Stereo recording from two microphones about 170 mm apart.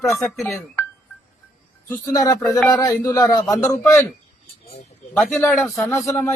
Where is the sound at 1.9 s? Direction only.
20° left (ahead or behind).